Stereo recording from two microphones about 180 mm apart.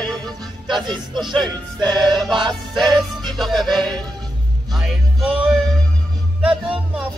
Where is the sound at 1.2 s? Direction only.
Centre (ahead or behind).